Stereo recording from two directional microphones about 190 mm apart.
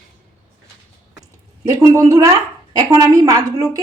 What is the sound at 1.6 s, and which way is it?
A woman's voice, 15° right (ahead or behind).